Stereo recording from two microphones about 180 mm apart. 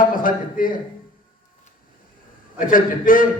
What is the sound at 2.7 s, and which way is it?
Speech, 50° left (ahead or behind).